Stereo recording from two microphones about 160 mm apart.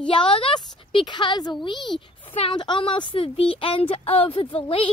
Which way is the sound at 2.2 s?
35° left (ahead or behind).